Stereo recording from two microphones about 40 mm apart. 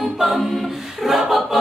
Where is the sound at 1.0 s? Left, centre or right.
Centre.